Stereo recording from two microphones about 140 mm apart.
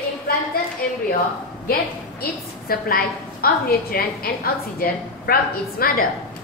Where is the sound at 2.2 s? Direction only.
90° left.